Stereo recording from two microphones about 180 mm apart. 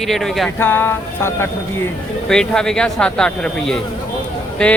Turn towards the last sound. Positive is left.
turn(degrees=5)  # may be behind; listen again after turning